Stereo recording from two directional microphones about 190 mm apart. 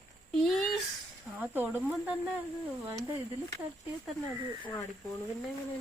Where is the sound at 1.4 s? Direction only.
10° right (ahead or behind).